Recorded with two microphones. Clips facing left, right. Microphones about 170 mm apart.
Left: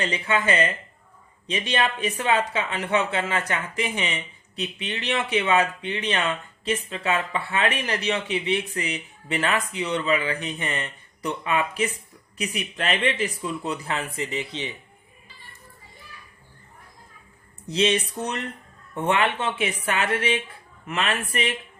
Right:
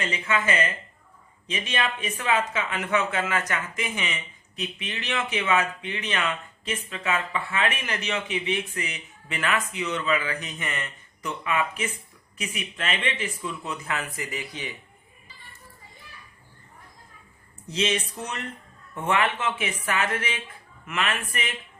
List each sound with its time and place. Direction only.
0.0 s speech: 30° left (ahead or behind)
17.7 s speech: 35° left (ahead or behind)